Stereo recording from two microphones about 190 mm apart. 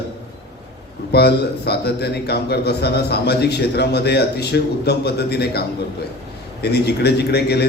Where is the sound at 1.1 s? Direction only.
60° left (ahead or behind).